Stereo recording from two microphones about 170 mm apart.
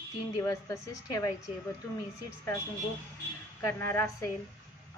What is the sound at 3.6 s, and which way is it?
Speech, 15° left (ahead or behind).